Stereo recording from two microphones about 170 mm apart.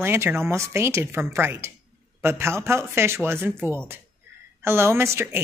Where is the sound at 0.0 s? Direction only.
15° right (ahead or behind).